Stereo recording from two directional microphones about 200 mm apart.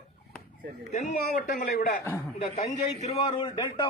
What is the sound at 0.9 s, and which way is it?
A man's voice, 45° left (ahead or behind).